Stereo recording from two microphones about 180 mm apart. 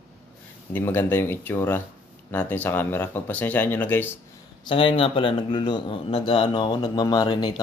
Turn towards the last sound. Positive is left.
turn(degrees=20)  # may be behind; listen again after turning